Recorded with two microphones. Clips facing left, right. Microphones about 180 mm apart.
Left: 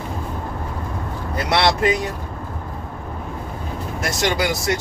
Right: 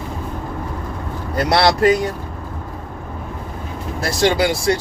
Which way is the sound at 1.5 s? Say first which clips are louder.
Right 4 dB; 35° right (ahead or behind).